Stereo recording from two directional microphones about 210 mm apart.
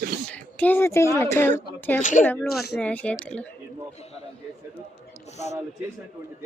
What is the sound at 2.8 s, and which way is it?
Speech, 5° left (ahead or behind).